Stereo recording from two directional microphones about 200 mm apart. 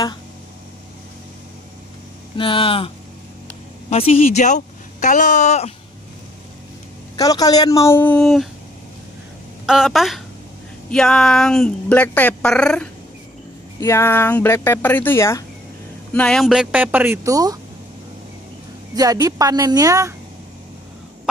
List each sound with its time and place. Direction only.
2.3 s speech: 25° left (ahead or behind)
3.9 s speech: 30° left (ahead or behind)
7.2 s speech: 20° left (ahead or behind); by 8.5 s centre (ahead or behind)
9.7 s speech: centre (ahead or behind); by 17.6 s 15° right (ahead or behind)
18.9 s speech: 20° right (ahead or behind)